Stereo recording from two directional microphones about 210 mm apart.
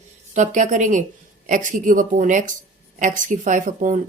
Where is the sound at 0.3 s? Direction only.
35° right (ahead or behind).